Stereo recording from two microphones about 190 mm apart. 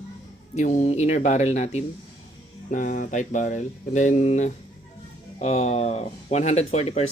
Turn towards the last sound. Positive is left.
turn(degrees=35)  # may be behind; listen again after turning